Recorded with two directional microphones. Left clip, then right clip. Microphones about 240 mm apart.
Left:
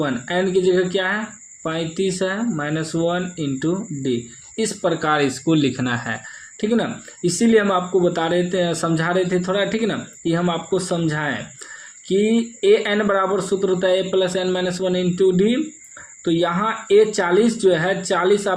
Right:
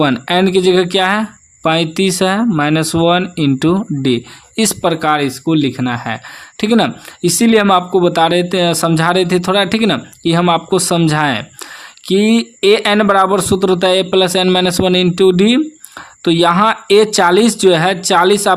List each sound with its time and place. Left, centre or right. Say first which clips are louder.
0.0 s speech: right 8 dB; right
6.6 s speech: right 8 dB; right